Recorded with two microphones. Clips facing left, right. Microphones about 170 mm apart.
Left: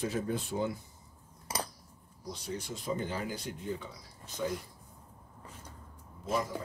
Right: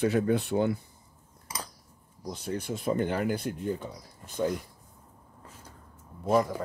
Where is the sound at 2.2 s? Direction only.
50° right (ahead or behind).